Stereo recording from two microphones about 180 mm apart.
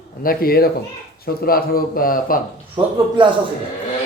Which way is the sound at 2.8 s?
30° right (ahead or behind).